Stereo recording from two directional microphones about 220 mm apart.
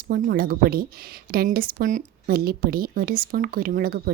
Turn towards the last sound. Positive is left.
turn(degrees=-45)  # may be behind; listen again after turning